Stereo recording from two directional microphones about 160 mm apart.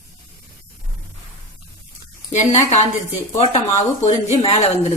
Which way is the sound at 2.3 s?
45° left (ahead or behind).